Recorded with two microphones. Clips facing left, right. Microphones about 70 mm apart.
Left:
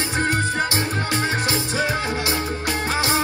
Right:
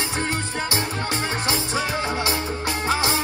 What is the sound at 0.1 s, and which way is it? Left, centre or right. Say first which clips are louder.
Music: left 5 dB; left.